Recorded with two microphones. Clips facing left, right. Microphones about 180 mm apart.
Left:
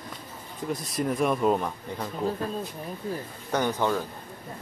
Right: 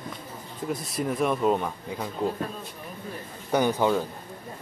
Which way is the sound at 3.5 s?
15° right (ahead or behind).